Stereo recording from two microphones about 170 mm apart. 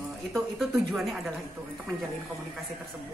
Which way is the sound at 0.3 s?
Centre (ahead or behind).